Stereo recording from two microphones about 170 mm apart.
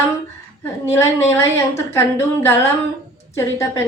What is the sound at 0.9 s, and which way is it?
A woman's voice, 15° left (ahead or behind).